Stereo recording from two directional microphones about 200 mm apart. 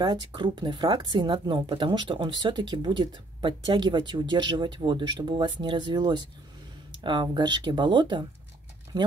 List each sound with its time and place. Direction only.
0.0 s speech: 20° right (ahead or behind)